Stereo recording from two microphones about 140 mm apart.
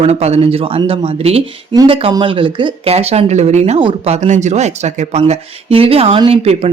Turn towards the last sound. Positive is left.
turn(degrees=-45)  # may be behind; listen again after turning